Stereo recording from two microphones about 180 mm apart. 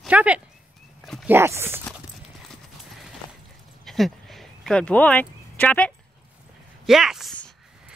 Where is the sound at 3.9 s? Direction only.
Centre (ahead or behind).